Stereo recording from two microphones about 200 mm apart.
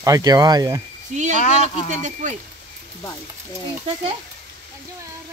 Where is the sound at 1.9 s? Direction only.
40° right (ahead or behind).